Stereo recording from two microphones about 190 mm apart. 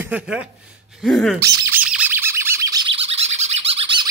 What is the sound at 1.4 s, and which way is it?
Bird, 15° right (ahead or behind).